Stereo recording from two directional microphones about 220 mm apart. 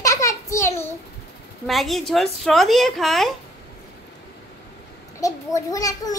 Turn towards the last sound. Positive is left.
turn(degrees=15)  # may be behind; listen again after turning